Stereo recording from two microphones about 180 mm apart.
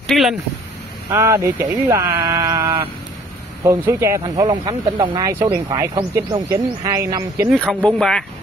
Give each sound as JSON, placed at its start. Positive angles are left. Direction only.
{"t": 0.0, "sound": "speech", "side_deg": 0}
{"t": 1.1, "sound": "speech", "side_deg": -15}
{"t": 7.5, "sound": "speech", "side_deg": 5}